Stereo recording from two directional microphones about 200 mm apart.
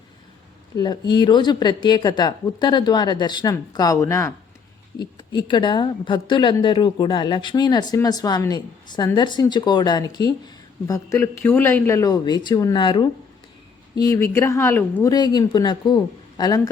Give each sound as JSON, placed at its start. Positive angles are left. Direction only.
{"t": 0.8, "sound": "a woman's voice", "side_deg": 20}